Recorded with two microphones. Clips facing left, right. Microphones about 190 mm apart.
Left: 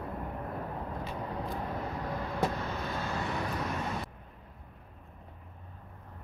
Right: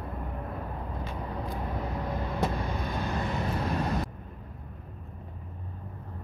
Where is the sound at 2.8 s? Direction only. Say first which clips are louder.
Right 3 dB; 15° right (ahead or behind).